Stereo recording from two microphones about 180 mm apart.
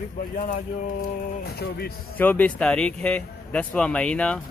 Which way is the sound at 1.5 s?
60° left (ahead or behind).